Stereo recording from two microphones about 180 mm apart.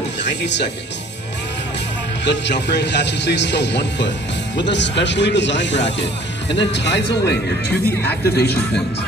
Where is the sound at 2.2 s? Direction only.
75° left (ahead or behind).